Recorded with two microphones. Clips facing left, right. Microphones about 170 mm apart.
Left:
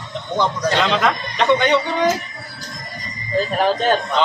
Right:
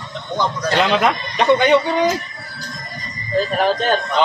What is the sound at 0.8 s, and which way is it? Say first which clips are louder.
Speech: right 4 dB; 10° right (ahead or behind).